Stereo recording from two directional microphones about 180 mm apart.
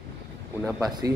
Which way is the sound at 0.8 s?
20° right (ahead or behind).